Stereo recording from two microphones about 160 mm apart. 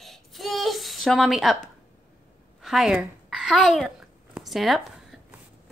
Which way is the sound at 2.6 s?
5° right (ahead or behind).